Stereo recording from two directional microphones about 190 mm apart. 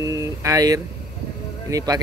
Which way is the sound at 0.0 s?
15° right (ahead or behind).